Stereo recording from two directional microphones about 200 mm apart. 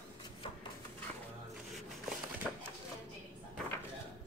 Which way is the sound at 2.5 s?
Centre (ahead or behind).